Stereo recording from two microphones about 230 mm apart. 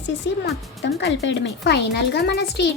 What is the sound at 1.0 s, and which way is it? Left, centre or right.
A woman's voice, left.